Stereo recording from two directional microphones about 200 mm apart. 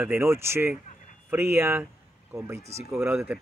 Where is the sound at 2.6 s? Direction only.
35° right (ahead or behind).